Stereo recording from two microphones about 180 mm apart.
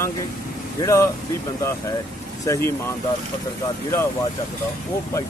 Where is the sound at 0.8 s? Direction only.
15° left (ahead or behind).